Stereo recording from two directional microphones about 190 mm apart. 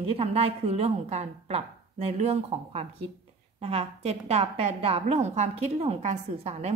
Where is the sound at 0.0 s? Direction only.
30° right (ahead or behind).